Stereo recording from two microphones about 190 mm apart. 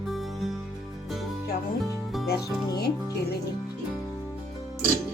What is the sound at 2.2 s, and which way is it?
Speech, 55° left (ahead or behind).